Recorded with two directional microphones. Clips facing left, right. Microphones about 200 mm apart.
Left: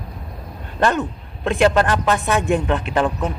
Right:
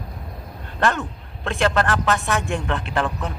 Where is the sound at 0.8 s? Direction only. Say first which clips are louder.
Left 3 dB; 20° left (ahead or behind).